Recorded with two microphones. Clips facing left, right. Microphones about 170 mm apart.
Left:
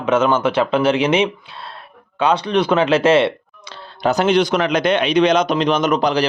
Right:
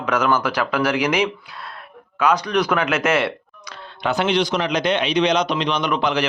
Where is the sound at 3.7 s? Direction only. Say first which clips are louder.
Left 5 dB; 40° left (ahead or behind).